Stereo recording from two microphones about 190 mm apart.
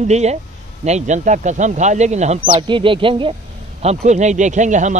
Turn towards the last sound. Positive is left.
turn(degrees=-40)  # may be behind; listen again after turning